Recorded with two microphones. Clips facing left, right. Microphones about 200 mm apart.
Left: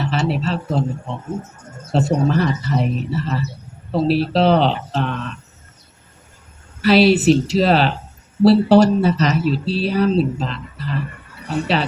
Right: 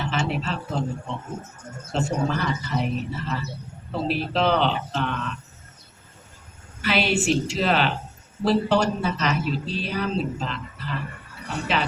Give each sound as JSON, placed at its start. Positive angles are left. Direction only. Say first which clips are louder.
{"t": 0.0, "sound": "a sound", "louder": "left 6 dB", "side_deg": 40}
{"t": 1.9, "sound": "speech", "louder": "left 7 dB", "side_deg": 40}
{"t": 6.8, "sound": "speech", "louder": "left 10 dB", "side_deg": 40}